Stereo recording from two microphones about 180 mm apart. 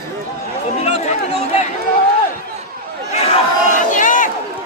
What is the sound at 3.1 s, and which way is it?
Battle cry, 35° left (ahead or behind).